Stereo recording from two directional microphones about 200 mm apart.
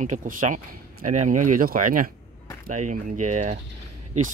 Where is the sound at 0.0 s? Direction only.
40° right (ahead or behind).